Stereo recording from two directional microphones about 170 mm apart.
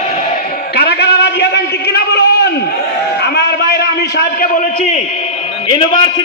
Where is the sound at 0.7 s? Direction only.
70° left (ahead or behind).